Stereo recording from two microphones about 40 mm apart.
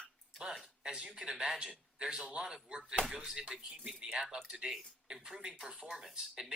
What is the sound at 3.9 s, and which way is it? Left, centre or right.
Speech, right.